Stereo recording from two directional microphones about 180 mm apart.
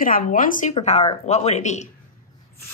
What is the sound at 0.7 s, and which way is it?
Speech, 35° left (ahead or behind).